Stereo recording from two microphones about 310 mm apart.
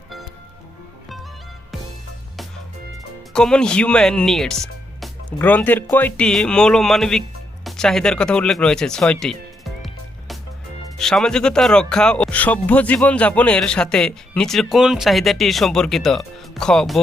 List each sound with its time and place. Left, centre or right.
3.3 s speech: centre
9.2 s music: centre
10.9 s speech: centre